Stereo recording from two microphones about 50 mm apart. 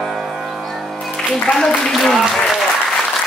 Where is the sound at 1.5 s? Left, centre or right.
Centre.